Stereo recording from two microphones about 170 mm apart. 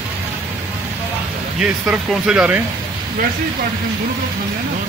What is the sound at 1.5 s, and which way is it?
Speech, 5° right (ahead or behind).